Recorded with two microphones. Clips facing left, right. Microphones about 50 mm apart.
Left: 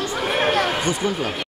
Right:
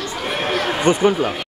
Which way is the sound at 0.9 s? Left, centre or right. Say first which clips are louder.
Right 7 dB; right.